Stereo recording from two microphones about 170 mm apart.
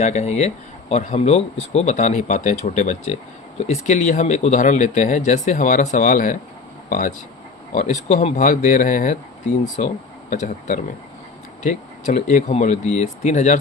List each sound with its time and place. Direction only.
0.0 s speech: 40° left (ahead or behind)
7.7 s speech: 45° left (ahead or behind)